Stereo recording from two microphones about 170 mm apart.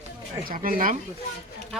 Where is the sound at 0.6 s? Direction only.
55° right (ahead or behind).